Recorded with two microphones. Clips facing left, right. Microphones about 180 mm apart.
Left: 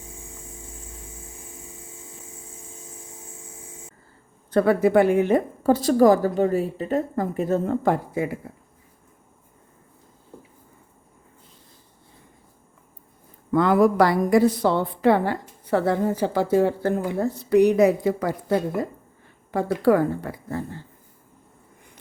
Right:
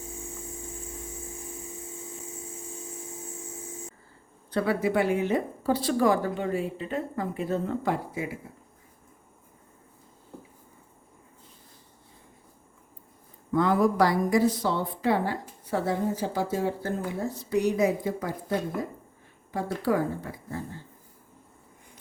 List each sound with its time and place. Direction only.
4.5 s a woman's voice: 50° left (ahead or behind)
13.5 s a woman's voice: 70° left (ahead or behind)